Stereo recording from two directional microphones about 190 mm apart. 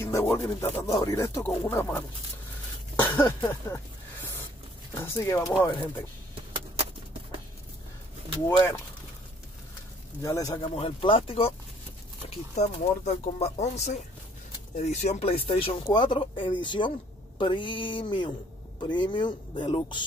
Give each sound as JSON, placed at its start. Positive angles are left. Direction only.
{"t": 0.0, "sound": "a sound", "side_deg": 10}
{"t": 0.4, "sound": "speech", "side_deg": 15}
{"t": 3.0, "sound": "throat clearing", "side_deg": 10}
{"t": 4.9, "sound": "speech", "side_deg": 15}
{"t": 8.5, "sound": "speech", "side_deg": 10}
{"t": 10.2, "sound": "speech", "side_deg": 15}